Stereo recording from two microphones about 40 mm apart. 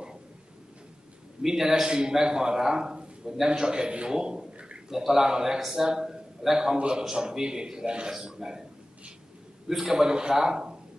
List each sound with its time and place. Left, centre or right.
1.4 s a man's voice: centre
4.1 s a sound: centre
4.9 s a man's voice: centre
9.7 s a man's voice: centre